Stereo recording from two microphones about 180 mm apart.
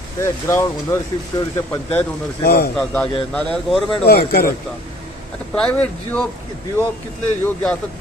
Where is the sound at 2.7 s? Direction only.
5° left (ahead or behind).